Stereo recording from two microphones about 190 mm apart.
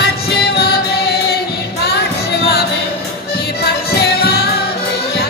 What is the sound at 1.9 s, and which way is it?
Music, 60° left (ahead or behind).